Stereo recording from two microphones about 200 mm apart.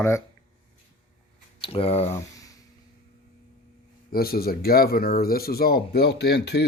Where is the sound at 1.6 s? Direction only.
30° left (ahead or behind).